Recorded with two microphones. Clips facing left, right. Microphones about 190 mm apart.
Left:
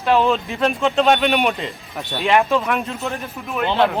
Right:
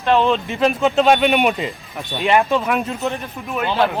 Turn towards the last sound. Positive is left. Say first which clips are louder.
# even
turn(degrees=0)  # may be behind; listen again after turning